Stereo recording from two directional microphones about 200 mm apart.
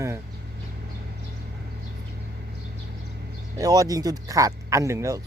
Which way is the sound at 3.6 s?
20° right (ahead or behind).